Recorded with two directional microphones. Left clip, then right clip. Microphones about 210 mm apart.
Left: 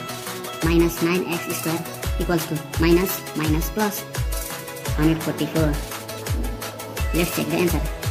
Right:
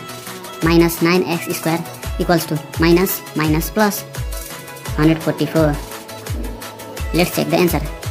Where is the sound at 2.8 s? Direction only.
25° right (ahead or behind).